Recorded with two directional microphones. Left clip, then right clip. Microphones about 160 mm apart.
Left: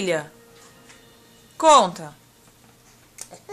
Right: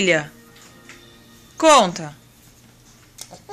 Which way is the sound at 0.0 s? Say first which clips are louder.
Right 6 dB; centre (ahead or behind).